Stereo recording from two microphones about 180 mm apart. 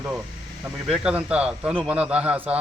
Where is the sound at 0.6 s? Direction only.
5° right (ahead or behind).